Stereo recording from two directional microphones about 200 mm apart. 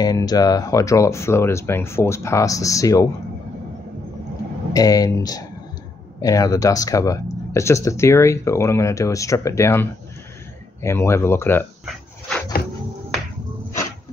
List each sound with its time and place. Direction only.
0.0 s speech: 20° left (ahead or behind)
4.7 s speech: 20° left (ahead or behind)
11.8 s dog: 5° left (ahead or behind)